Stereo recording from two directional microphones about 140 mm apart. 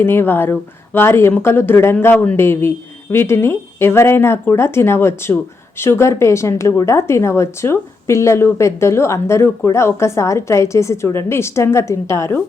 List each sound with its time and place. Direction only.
0.0 s speech: 15° left (ahead or behind)